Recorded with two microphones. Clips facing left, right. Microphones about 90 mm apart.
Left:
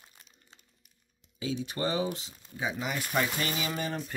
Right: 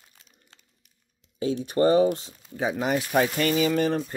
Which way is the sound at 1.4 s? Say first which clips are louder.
Right 10 dB; 45° right (ahead or behind).